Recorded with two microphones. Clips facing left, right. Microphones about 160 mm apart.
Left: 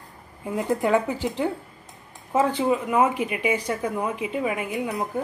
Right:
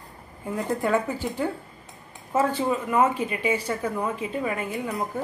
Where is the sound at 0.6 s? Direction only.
15° left (ahead or behind).